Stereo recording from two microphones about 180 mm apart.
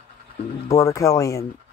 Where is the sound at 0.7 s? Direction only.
15° left (ahead or behind).